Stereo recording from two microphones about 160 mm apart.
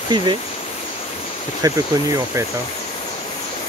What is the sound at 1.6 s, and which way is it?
Speech, 20° right (ahead or behind).